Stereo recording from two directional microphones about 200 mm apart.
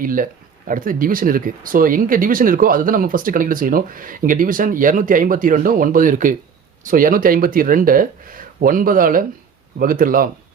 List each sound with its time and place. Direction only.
0.0 s speech: 45° right (ahead or behind)